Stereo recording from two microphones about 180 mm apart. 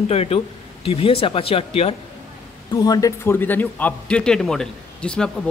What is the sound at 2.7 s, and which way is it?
A man's voice, 20° left (ahead or behind).